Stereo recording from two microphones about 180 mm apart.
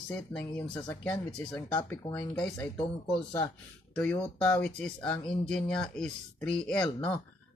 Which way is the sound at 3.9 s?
5° left (ahead or behind).